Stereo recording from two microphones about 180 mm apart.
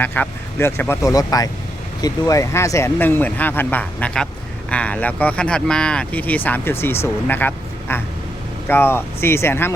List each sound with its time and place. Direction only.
0.0 s speech: 10° left (ahead or behind)